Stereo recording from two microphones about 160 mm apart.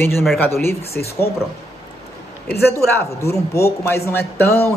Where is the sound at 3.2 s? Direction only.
20° left (ahead or behind).